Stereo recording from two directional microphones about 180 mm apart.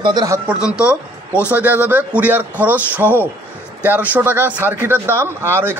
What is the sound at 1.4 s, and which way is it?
Speech, 10° right (ahead or behind).